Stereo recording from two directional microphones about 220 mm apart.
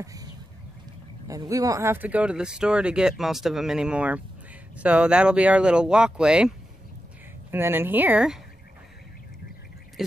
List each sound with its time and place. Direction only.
0.0 s a sound: 15° right (ahead or behind)
1.2 s speech: 15° right (ahead or behind)
7.5 s speech: 10° right (ahead or behind)
10.0 s speech: centre (ahead or behind)